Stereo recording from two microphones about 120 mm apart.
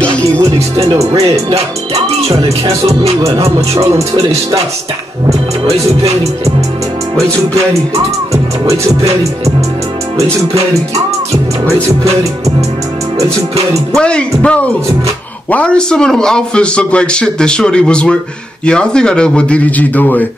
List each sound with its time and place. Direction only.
0.9 s music: 25° right (ahead or behind)
2.0 s speech: 60° right (ahead or behind)
8.3 s music: 25° right (ahead or behind)
13.9 s a man's voice: 10° left (ahead or behind)